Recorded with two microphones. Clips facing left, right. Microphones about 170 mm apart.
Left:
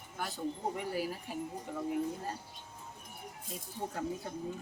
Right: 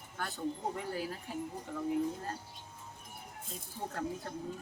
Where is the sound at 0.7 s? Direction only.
10° left (ahead or behind).